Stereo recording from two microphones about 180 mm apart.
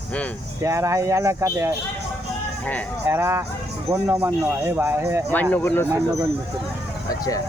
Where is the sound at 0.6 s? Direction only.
15° right (ahead or behind).